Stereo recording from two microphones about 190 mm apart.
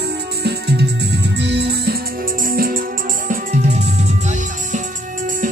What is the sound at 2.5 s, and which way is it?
Music, 50° right (ahead or behind).